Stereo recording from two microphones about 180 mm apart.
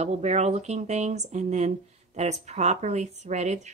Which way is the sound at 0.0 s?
35° right (ahead or behind).